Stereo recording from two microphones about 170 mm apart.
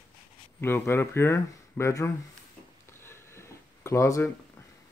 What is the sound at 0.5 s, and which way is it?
Speech, 15° left (ahead or behind).